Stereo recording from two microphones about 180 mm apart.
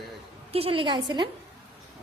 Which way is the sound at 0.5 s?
30° right (ahead or behind).